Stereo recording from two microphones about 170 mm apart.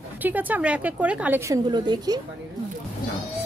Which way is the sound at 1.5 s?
25° right (ahead or behind).